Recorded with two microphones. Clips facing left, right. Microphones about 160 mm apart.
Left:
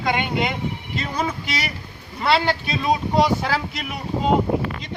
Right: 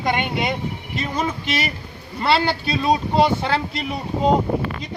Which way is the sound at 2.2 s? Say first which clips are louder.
Right 1 dB; 30° right (ahead or behind).